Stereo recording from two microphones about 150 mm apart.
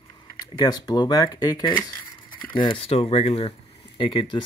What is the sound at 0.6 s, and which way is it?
Speech, 25° left (ahead or behind).